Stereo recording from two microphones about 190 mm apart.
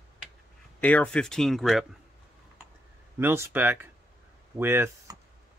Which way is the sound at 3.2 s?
10° right (ahead or behind).